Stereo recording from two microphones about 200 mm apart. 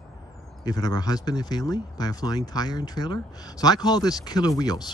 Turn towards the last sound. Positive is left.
turn(degrees=20)  # may be behind; listen again after turning